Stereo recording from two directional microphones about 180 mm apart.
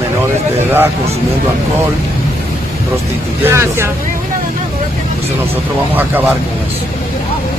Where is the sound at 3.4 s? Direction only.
15° right (ahead or behind).